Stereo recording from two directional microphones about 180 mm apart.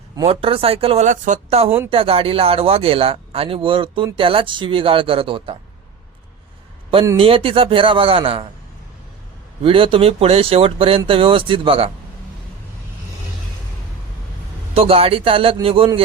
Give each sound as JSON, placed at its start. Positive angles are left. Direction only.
{"t": 0.3, "sound": "speech", "side_deg": -30}
{"t": 7.2, "sound": "speech", "side_deg": -30}
{"t": 9.6, "sound": "speech", "side_deg": -30}
{"t": 14.7, "sound": "a man's voice", "side_deg": -35}